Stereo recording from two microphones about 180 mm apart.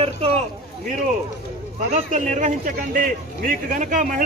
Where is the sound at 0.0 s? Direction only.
35° right (ahead or behind).